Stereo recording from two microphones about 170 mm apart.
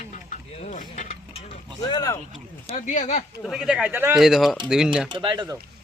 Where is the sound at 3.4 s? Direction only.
5° right (ahead or behind).